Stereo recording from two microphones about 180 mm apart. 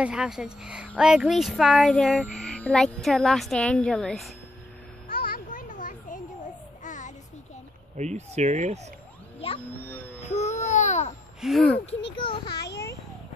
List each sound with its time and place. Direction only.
0.0 s speech: 5° right (ahead or behind)
5.0 s music: 55° left (ahead or behind)
6.8 s a sound: 45° left (ahead or behind)
8.0 s speech: 40° right (ahead or behind)
9.4 s speech: 30° left (ahead or behind)
10.3 s babbling: 40° left (ahead or behind)
11.4 s speech: centre (ahead or behind)
11.8 s a child's voice: 30° left (ahead or behind)